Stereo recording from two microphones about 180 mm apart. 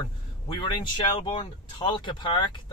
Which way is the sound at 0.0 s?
25° left (ahead or behind).